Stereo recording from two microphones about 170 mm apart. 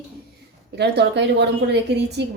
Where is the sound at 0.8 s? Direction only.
85° right.